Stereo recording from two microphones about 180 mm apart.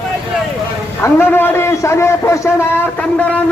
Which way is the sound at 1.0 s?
10° left (ahead or behind).